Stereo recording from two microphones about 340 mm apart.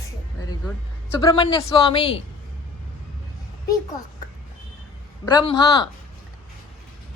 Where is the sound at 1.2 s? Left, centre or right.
Centre.